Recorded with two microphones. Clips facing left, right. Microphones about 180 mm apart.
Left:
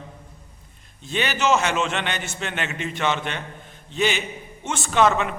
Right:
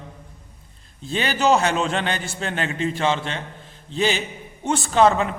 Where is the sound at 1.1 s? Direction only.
35° right (ahead or behind).